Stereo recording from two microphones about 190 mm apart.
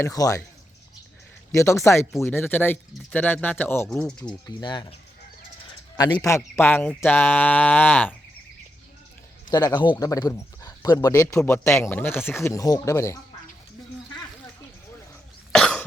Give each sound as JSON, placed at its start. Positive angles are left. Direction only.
{"t": 0.0, "sound": "speech", "side_deg": 20}
{"t": 1.5, "sound": "speech", "side_deg": 15}
{"t": 4.2, "sound": "speech", "side_deg": 20}
{"t": 6.0, "sound": "speech", "side_deg": 20}
{"t": 9.5, "sound": "speech", "side_deg": 20}
{"t": 15.5, "sound": "cough", "side_deg": 5}